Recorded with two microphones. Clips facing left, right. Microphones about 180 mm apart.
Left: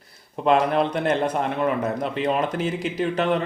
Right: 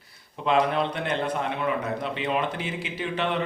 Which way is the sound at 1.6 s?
45° left (ahead or behind).